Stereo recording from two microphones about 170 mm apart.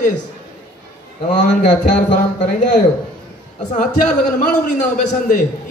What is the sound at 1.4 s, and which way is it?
A man's voice, 45° left (ahead or behind).